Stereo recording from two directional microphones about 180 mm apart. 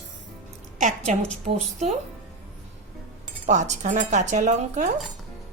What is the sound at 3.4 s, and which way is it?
Speech, 40° right (ahead or behind).